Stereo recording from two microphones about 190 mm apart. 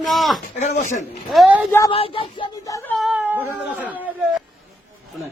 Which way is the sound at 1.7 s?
15° left (ahead or behind).